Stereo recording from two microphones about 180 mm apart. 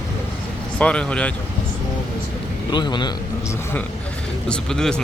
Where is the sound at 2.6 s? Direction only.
25° left (ahead or behind).